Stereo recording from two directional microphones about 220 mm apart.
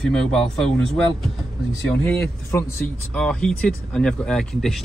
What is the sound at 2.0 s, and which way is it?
Speech, 5° left (ahead or behind).